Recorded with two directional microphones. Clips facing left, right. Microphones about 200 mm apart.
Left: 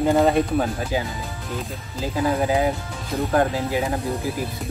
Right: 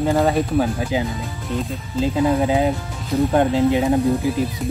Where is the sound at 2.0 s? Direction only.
20° right (ahead or behind).